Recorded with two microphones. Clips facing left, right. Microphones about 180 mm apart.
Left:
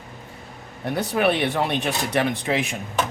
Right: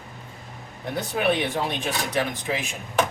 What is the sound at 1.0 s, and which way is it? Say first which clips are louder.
Speech: left 2 dB; 65° left (ahead or behind).